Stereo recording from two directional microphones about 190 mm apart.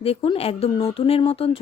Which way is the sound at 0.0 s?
30° left (ahead or behind).